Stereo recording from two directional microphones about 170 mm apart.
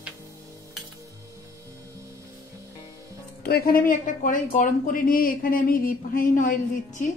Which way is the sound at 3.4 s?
65° left (ahead or behind).